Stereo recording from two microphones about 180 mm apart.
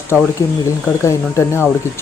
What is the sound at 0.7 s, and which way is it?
Speech, 15° left (ahead or behind).